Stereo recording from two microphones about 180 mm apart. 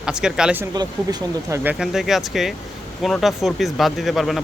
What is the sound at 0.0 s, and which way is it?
Speech, 5° right (ahead or behind).